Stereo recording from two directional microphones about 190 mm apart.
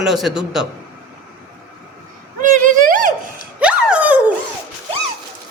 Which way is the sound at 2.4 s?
45° right (ahead or behind).